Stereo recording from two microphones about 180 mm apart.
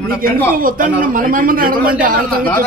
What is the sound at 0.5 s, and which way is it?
A man's voice, 50° right (ahead or behind).